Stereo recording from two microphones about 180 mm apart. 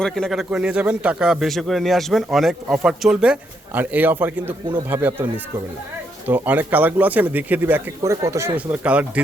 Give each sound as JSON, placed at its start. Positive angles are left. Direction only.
{"t": 0.0, "sound": "a man's voice", "side_deg": 0}